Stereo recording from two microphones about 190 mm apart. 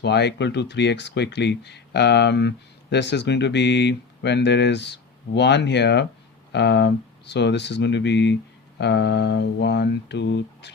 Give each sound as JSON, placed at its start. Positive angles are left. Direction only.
{"t": 0.0, "sound": "speech", "side_deg": 65}